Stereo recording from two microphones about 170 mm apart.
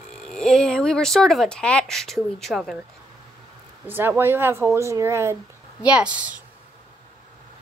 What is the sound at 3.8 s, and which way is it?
Speech, 10° right (ahead or behind).